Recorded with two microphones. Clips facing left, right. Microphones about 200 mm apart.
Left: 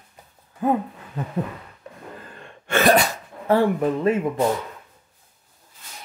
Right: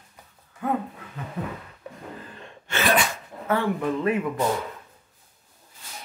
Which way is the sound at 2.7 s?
40° left (ahead or behind).